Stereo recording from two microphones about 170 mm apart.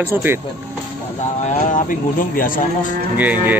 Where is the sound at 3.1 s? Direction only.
10° right (ahead or behind).